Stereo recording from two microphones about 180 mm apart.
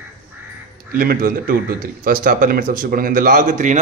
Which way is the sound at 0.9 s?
55° right (ahead or behind).